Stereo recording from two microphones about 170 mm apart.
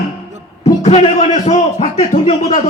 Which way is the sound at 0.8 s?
35° left (ahead or behind).